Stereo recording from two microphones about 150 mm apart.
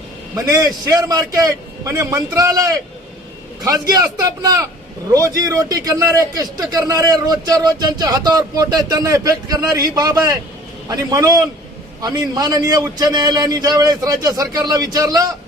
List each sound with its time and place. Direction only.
0.3 s a man's voice: 25° right (ahead or behind)